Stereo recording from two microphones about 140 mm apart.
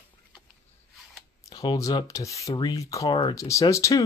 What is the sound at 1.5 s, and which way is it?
Speech, 25° left (ahead or behind).